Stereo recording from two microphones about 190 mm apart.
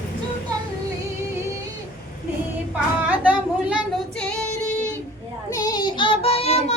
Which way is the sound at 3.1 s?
10° right (ahead or behind).